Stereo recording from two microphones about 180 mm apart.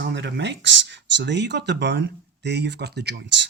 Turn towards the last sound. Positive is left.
turn(degrees=-70)  # may be behind; listen again after turning